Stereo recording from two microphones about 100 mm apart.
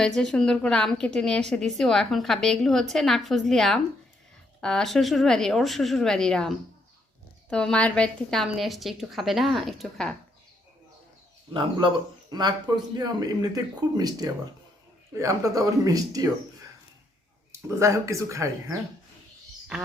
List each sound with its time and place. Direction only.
0.0 s a woman's voice: 5° left (ahead or behind)
7.5 s a woman's voice: 10° left (ahead or behind)
12.3 s speech: 45° right (ahead or behind)
17.5 s speech: 30° right (ahead or behind)